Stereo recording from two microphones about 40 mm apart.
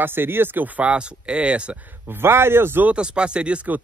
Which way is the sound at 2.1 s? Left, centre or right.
Right.